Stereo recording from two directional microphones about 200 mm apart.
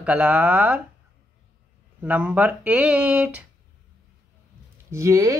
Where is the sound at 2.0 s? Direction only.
10° right (ahead or behind).